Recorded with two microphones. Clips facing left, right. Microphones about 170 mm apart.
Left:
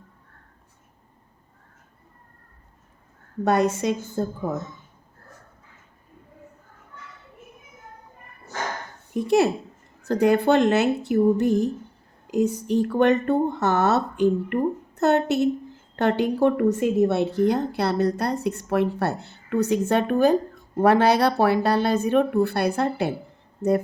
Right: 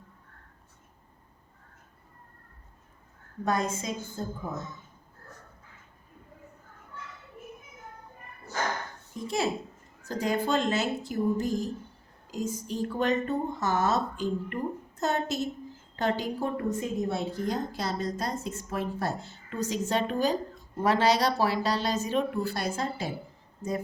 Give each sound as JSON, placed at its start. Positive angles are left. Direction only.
{"t": 3.4, "sound": "speech", "side_deg": 70}
{"t": 9.1, "sound": "speech", "side_deg": 65}